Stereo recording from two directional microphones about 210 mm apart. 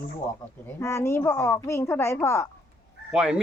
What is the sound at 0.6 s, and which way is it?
Speech, 10° left (ahead or behind).